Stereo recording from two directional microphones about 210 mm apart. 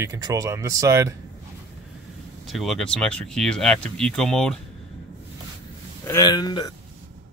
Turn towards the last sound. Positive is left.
turn(degrees=20)  # may be behind; listen again after turning